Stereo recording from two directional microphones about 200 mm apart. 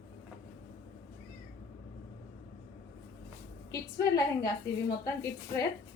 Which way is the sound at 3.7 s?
20° left (ahead or behind).